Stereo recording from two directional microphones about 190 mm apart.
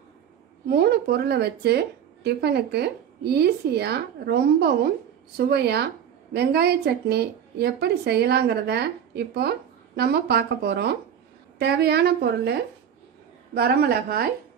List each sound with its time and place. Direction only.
0.7 s a woman's voice: 60° right (ahead or behind)
13.6 s speech: 55° right (ahead or behind)